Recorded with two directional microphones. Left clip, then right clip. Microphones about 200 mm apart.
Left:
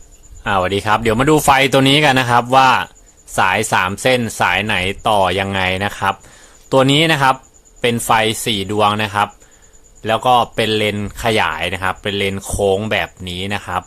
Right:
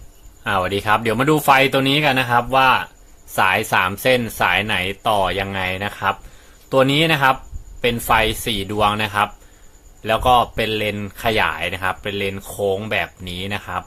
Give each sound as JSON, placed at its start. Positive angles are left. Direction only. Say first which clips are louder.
{"t": 0.4, "sound": "speech", "louder": "left 3 dB", "side_deg": 25}
{"t": 3.3, "sound": "speech", "louder": "left 2 dB", "side_deg": 20}